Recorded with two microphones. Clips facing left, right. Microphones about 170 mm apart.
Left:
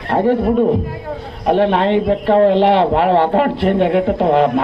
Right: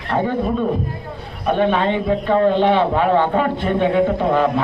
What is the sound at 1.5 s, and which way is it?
Speech, 80° left.